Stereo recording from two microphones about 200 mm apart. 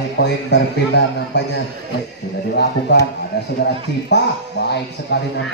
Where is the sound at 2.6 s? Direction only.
55° left (ahead or behind).